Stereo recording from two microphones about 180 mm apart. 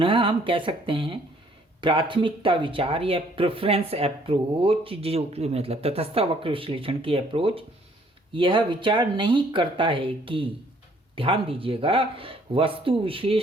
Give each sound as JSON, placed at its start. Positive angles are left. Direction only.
{"t": 0.0, "sound": "speech", "side_deg": -30}